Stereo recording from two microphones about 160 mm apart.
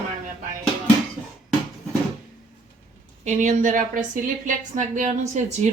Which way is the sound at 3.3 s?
50° right (ahead or behind).